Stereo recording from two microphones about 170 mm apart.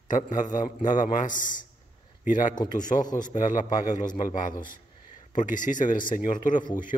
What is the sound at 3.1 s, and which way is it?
Speech, 50° left (ahead or behind).